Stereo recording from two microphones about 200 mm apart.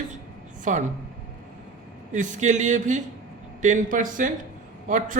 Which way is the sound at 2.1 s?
40° right (ahead or behind).